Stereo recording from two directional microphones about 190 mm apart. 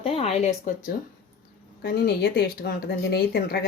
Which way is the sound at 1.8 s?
60° left (ahead or behind).